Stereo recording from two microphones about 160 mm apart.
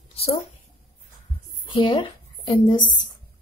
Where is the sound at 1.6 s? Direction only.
30° left (ahead or behind).